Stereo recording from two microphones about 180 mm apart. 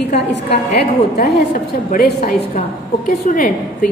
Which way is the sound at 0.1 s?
65° left (ahead or behind).